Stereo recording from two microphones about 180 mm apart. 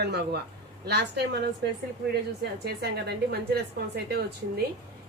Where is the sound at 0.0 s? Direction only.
65° right (ahead or behind).